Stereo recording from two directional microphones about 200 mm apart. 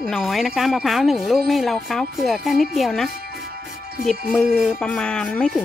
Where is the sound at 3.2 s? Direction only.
50° right (ahead or behind).